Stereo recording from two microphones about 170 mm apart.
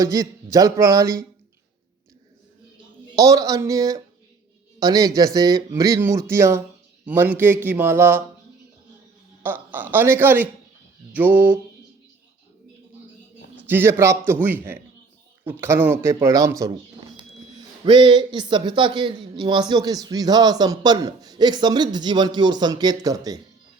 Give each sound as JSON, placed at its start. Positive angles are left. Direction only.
{"t": 0.0, "sound": "speech", "side_deg": -20}
{"t": 3.2, "sound": "a man's voice", "side_deg": -20}
{"t": 9.4, "sound": "a man's voice", "side_deg": -10}
{"t": 13.7, "sound": "a man's voice", "side_deg": -10}
{"t": 15.6, "sound": "a man's voice", "side_deg": -15}
{"t": 17.8, "sound": "speech", "side_deg": -30}